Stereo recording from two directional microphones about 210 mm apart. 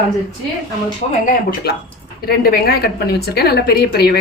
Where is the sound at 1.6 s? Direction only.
50° left (ahead or behind).